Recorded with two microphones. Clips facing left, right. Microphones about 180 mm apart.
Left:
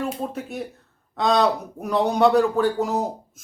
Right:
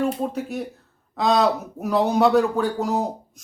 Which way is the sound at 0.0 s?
Centre (ahead or behind).